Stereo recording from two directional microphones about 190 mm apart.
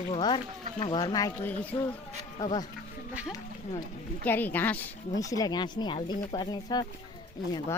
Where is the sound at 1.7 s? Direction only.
30° left (ahead or behind).